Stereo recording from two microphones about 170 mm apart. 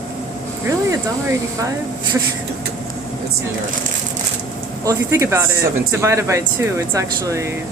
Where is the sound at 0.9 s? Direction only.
20° right (ahead or behind).